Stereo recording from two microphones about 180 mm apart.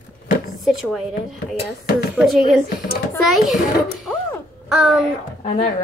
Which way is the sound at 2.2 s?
Centre (ahead or behind).